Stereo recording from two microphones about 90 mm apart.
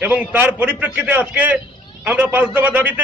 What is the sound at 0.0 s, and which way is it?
A man's voice, 20° right (ahead or behind).